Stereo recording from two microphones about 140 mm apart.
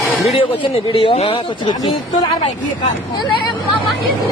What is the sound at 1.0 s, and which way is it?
Speech, 45° left (ahead or behind).